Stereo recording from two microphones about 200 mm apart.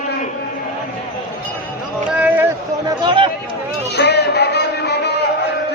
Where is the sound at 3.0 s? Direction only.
25° right (ahead or behind).